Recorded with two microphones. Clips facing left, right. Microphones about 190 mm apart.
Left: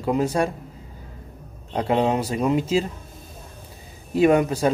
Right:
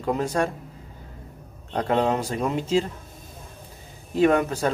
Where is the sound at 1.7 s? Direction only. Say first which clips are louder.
Left 1 dB; 10° left (ahead or behind).